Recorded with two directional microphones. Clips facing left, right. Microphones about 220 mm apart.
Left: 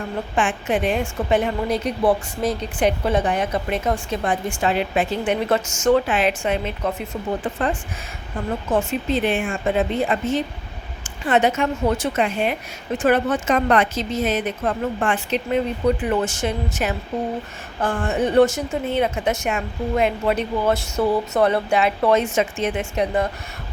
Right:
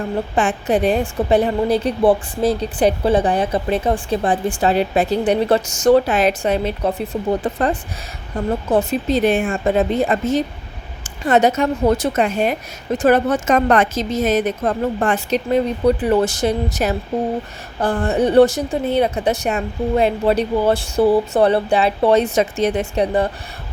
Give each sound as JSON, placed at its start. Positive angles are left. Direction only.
{"t": 0.3, "sound": "a woman's voice", "side_deg": -35}